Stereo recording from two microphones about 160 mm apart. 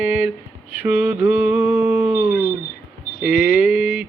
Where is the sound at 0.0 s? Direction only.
10° right (ahead or behind).